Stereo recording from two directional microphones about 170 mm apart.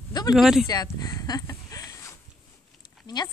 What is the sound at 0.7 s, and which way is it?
Speech, 20° left (ahead or behind).